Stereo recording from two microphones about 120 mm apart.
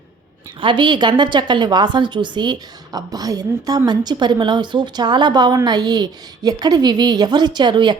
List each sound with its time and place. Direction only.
0.6 s a woman's voice: 40° right (ahead or behind)